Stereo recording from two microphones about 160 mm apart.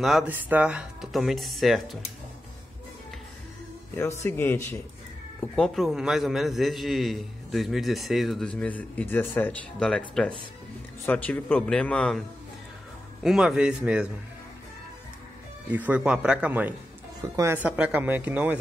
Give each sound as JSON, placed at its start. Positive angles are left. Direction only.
{"t": 0.0, "sound": "a man's voice", "side_deg": 0}
{"t": 4.2, "sound": "a man's voice", "side_deg": 15}
{"t": 5.6, "sound": "a man's voice", "side_deg": 0}
{"t": 13.2, "sound": "a man's voice", "side_deg": 0}
{"t": 15.7, "sound": "speech", "side_deg": -10}